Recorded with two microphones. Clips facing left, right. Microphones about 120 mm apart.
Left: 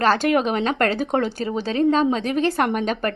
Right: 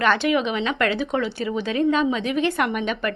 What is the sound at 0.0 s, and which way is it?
Speech, 40° left (ahead or behind).